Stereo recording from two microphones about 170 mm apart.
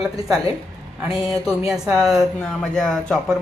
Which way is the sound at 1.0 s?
Centre (ahead or behind).